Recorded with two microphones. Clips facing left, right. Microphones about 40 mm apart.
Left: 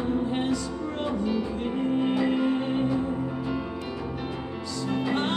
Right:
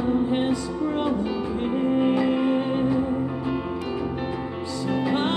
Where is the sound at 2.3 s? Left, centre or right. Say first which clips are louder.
Right 3 dB; right.